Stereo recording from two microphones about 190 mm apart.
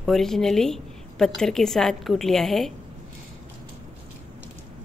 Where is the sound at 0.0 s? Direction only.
Centre (ahead or behind).